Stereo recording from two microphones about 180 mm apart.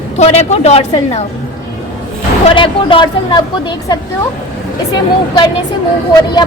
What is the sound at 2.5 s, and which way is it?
Speech, 30° left (ahead or behind).